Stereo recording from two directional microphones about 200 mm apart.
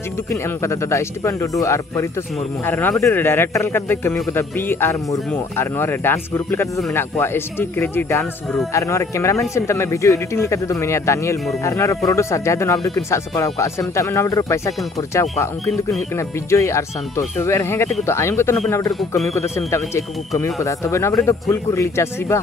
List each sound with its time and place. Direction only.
0.3 s speech: 15° left (ahead or behind)
16.2 s speech: 15° left (ahead or behind)
20.6 s speech: 15° left (ahead or behind)